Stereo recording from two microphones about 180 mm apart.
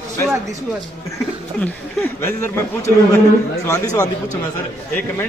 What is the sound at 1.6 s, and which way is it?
Speech, 10° left (ahead or behind).